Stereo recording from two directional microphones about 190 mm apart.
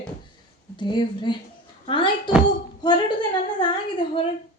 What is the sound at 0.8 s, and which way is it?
A woman's voice, 25° left (ahead or behind).